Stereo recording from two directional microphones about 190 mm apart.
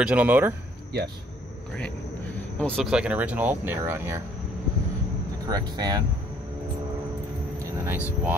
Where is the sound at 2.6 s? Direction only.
Centre (ahead or behind).